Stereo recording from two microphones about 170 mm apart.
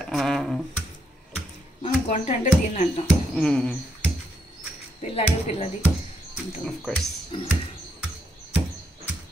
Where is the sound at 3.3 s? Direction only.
5° left (ahead or behind).